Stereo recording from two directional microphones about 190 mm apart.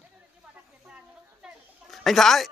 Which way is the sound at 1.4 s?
Centre (ahead or behind).